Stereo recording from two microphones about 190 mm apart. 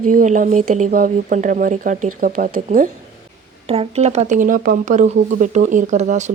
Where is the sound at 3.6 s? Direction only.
30° right (ahead or behind).